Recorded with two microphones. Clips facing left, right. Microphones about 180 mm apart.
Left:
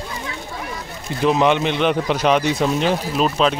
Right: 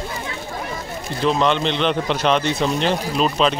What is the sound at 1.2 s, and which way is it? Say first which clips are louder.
A man's voice: left 2 dB; 15° left (ahead or behind).